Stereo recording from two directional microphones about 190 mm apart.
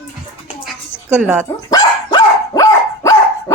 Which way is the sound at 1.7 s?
20° left (ahead or behind).